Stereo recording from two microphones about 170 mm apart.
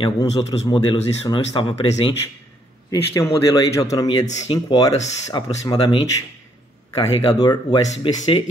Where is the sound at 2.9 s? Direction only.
20° left (ahead or behind).